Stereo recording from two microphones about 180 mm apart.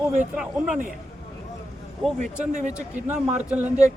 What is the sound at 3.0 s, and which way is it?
Speech, 10° right (ahead or behind).